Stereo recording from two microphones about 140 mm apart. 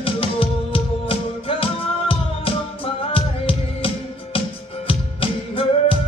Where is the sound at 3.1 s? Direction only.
40° left (ahead or behind).